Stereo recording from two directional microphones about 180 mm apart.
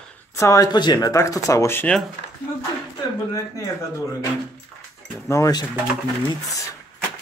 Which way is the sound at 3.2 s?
20° left (ahead or behind).